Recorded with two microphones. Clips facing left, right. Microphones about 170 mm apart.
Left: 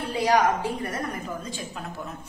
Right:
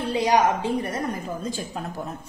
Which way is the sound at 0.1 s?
20° right (ahead or behind).